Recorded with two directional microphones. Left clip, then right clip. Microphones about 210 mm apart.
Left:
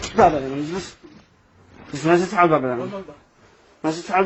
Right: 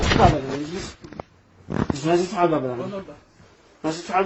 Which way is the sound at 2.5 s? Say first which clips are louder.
Left 4 dB; 40° left (ahead or behind).